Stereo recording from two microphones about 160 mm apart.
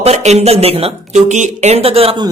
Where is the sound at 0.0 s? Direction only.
45° right (ahead or behind).